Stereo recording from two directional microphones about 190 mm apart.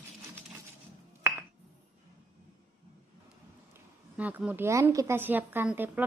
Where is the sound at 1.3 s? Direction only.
10° right (ahead or behind).